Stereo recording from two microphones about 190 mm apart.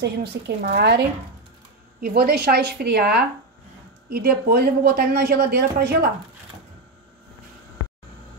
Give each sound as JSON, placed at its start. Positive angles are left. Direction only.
{"t": 0.0, "sound": "a woman's voice", "side_deg": -55}